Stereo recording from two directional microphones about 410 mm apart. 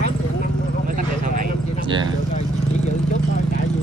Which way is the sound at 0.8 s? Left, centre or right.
Centre.